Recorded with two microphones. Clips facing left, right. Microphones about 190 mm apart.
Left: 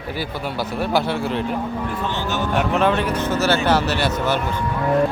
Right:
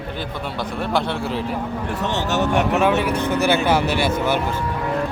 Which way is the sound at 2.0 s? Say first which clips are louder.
Right 6 dB; 75° right (ahead or behind).